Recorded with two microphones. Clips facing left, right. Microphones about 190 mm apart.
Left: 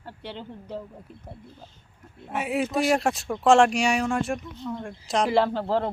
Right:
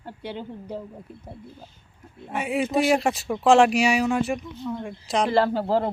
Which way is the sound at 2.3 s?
Centre (ahead or behind).